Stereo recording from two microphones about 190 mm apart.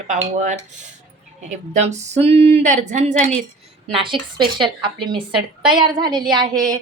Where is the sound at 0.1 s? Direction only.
40° right (ahead or behind).